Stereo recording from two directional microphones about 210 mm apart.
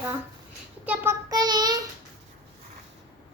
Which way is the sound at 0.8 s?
10° right (ahead or behind).